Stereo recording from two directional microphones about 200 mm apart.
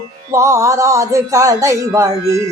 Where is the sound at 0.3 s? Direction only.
15° right (ahead or behind).